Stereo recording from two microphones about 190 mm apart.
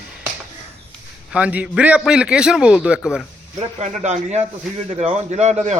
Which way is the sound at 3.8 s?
40° right (ahead or behind).